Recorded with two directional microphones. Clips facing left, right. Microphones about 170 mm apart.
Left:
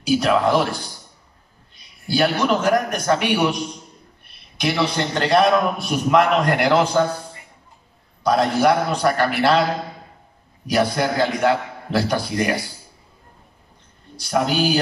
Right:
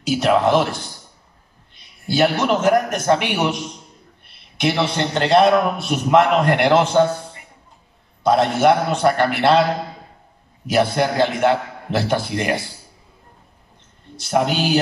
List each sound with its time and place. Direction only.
0.0 s a man's voice: 25° right (ahead or behind)
2.0 s a man's voice: 20° right (ahead or behind)
4.6 s a man's voice: 25° right (ahead or behind)
8.2 s a man's voice: 25° right (ahead or behind)
10.7 s a man's voice: 25° right (ahead or behind)
14.1 s a man's voice: 25° right (ahead or behind)